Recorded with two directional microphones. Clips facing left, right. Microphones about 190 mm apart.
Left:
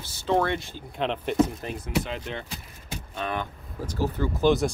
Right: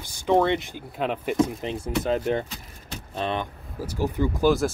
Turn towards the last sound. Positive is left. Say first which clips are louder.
# right 1 dB
turn(degrees=-10)  # may be behind; listen again after turning